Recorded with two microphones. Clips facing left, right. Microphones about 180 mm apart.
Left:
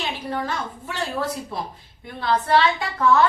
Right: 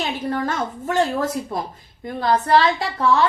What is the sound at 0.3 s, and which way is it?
A woman's voice, 50° right (ahead or behind).